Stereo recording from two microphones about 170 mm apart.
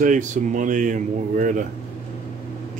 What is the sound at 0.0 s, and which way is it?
Speech, 50° right (ahead or behind).